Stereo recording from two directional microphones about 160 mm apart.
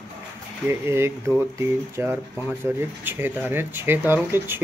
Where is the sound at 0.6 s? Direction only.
15° right (ahead or behind).